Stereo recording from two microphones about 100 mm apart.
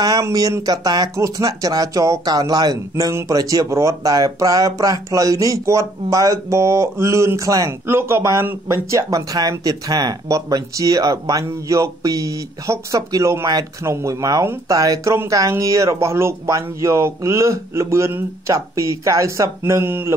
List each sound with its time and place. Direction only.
0.2 s speech: 35° right (ahead or behind)
3.1 s speech: 30° right (ahead or behind)